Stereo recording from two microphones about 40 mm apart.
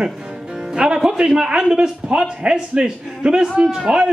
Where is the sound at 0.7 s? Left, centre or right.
Centre.